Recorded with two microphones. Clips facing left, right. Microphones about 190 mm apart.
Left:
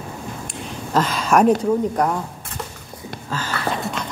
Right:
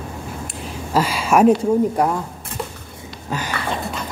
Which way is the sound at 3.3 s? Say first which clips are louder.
Right 2 dB; 15° right (ahead or behind).